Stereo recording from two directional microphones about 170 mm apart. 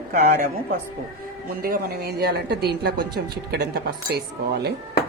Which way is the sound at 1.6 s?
60° right (ahead or behind).